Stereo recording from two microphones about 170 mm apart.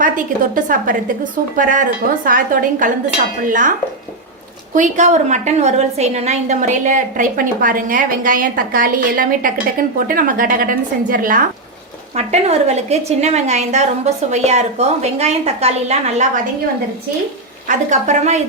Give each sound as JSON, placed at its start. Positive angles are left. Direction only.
{"t": 0.0, "sound": "a woman's voice", "side_deg": -50}
{"t": 12.1, "sound": "a woman's voice", "side_deg": -40}
{"t": 17.7, "sound": "a woman's voice", "side_deg": -45}